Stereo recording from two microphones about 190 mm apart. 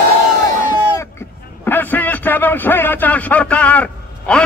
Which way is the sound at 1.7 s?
10° left (ahead or behind).